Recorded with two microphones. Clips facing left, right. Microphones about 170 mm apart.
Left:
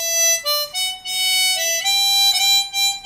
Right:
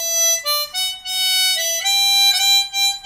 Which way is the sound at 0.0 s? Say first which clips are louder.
Left 1 dB; 15° left (ahead or behind).